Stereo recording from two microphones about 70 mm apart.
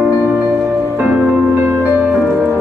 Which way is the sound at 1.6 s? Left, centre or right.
Right.